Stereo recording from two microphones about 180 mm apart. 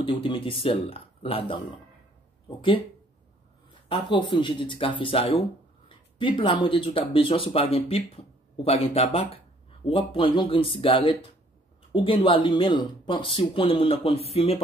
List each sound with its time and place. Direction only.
0.0 s speech: 30° left (ahead or behind)
3.9 s speech: 30° left (ahead or behind)